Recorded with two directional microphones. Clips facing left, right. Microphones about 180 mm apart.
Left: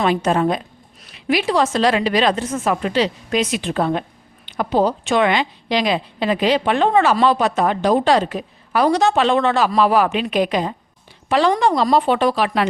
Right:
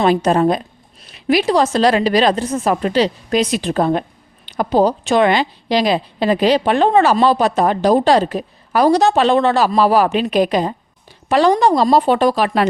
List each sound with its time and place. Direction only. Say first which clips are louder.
0.0 s a woman's voice: right 4 dB; 40° right (ahead or behind)